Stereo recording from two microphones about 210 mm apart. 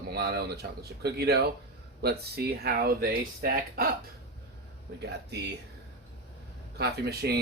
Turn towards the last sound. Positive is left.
turn(degrees=-50)  # may be behind; listen again after turning